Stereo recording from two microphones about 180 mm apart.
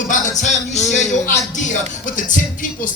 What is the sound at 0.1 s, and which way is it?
Music, 40° left (ahead or behind).